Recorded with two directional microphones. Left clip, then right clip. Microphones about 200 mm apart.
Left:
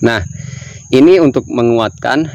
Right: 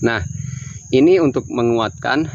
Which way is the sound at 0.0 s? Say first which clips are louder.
Left 5 dB; 45° left (ahead or behind).